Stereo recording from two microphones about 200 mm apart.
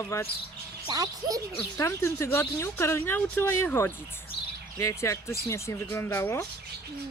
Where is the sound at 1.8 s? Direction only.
15° left (ahead or behind).